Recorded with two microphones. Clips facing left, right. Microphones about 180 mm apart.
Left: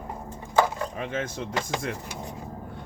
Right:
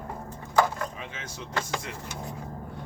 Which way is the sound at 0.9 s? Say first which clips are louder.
Left 10 dB; 50° left (ahead or behind).